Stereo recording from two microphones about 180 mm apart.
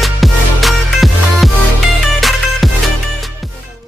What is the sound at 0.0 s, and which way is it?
Music, centre (ahead or behind).